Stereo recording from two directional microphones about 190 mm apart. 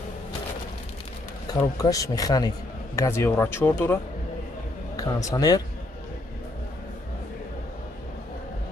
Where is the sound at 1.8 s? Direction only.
20° left (ahead or behind).